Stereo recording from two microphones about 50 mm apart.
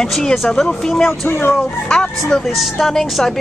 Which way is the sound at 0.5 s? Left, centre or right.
Centre.